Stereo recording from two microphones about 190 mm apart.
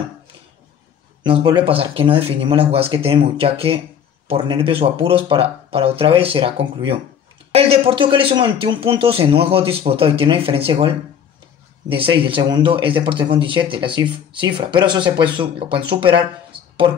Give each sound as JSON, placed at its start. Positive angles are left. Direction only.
{"t": 1.2, "sound": "speech", "side_deg": -25}
{"t": 11.9, "sound": "speech", "side_deg": -30}